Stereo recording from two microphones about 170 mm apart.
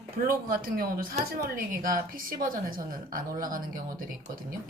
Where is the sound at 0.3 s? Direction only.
55° right (ahead or behind).